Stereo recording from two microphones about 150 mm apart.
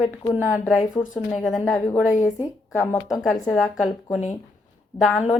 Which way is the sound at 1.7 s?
15° left (ahead or behind).